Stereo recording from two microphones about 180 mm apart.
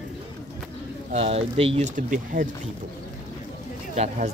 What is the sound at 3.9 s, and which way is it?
Speech, 40° right (ahead or behind).